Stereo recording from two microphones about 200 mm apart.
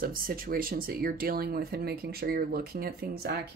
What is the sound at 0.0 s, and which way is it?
Speech, 45° right (ahead or behind).